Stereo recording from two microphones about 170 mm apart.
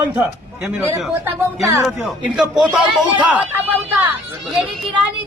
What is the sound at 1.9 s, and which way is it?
Speech, 5° right (ahead or behind).